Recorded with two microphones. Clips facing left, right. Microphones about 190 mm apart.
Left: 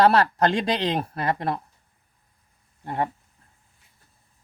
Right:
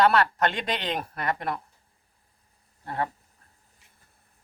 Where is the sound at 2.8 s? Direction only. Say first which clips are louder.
Left 3 dB; 20° left (ahead or behind).